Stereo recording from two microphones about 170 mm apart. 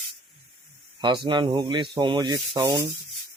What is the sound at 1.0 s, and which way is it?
Speech, 25° right (ahead or behind).